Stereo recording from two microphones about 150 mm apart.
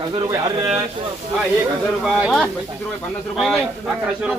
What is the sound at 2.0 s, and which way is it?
Speech, centre (ahead or behind).